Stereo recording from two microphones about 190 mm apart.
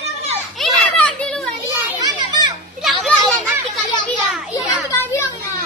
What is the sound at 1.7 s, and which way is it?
Children playing, 20° right (ahead or behind).